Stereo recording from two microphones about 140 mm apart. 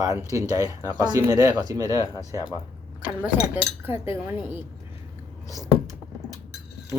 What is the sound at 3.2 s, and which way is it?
Speech, 15° right (ahead or behind).